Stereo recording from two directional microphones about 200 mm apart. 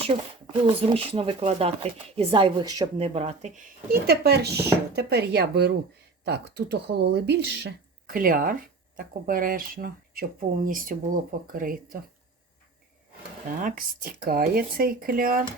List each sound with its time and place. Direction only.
0.0 s speech: 25° right (ahead or behind)
3.2 s speech: 35° right (ahead or behind)
3.9 s a woman's voice: 55° right (ahead or behind)
13.6 s speech: 45° right (ahead or behind)